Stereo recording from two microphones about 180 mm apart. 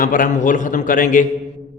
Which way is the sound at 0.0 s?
45° left (ahead or behind).